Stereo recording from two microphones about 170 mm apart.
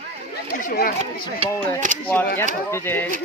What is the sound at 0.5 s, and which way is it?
Chatter, 55° left (ahead or behind).